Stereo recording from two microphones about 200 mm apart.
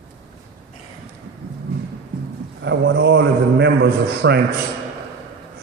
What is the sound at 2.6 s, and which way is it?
A man's voice, 60° right (ahead or behind).